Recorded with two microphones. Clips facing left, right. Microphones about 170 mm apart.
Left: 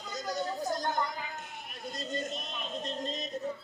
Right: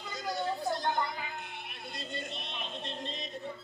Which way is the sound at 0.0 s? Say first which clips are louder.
Even; 40° left (ahead or behind).